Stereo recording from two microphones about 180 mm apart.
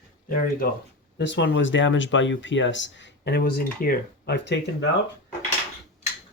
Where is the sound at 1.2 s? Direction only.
80° left.